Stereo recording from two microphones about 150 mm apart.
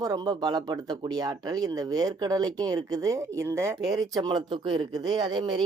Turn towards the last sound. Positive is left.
turn(degrees=-30)  # may be behind; listen again after turning